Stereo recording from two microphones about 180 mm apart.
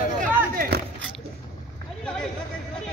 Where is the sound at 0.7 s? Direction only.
65° right (ahead or behind).